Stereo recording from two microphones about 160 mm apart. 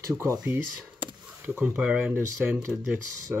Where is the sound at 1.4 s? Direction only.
10° right (ahead or behind).